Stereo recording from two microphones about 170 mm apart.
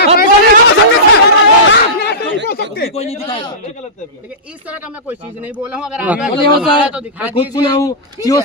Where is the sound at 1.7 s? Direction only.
75° left (ahead or behind).